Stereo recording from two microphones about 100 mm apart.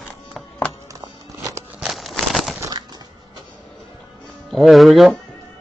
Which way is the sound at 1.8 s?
Centre (ahead or behind).